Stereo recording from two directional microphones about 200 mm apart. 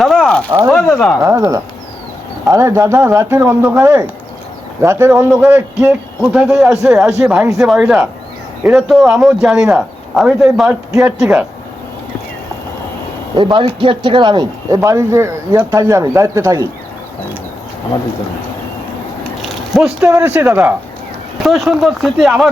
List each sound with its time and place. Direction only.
0.0 s a sound: centre (ahead or behind)
0.7 s speech: 5° left (ahead or behind)
1.2 s speech: 15° right (ahead or behind)
13.3 s speech: 25° right (ahead or behind)
19.4 s a sound: centre (ahead or behind)
20.1 s speech: 15° right (ahead or behind)
21.4 s speech: centre (ahead or behind)